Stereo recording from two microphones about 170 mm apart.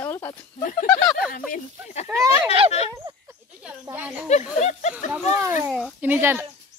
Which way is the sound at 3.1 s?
30° right (ahead or behind).